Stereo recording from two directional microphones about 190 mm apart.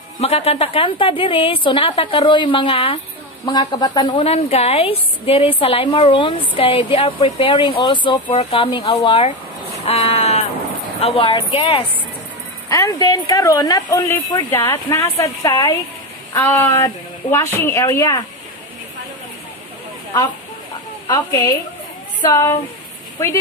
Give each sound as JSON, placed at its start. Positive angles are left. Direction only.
{"t": 0.2, "sound": "a woman's voice", "side_deg": 35}
{"t": 9.8, "sound": "a sound", "side_deg": 30}
{"t": 11.0, "sound": "a woman's voice", "side_deg": 30}
{"t": 12.6, "sound": "speech", "side_deg": 15}
{"t": 21.1, "sound": "a woman's voice", "side_deg": 20}